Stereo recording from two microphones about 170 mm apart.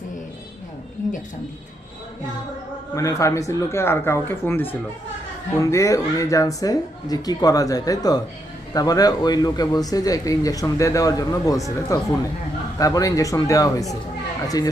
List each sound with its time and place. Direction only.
2.9 s speech: 20° left (ahead or behind)
5.7 s speech: 20° left (ahead or behind)